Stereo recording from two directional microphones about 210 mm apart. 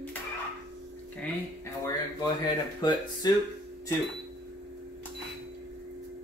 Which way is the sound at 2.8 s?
20° left (ahead or behind).